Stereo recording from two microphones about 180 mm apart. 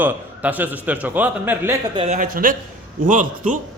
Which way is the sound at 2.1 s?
50° right (ahead or behind).